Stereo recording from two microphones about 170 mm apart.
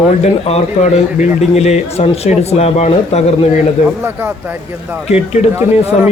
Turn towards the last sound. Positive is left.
turn(degrees=-15)  # may be behind; listen again after turning